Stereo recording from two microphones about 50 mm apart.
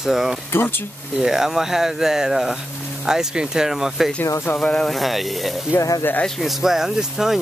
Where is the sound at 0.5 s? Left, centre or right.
Left.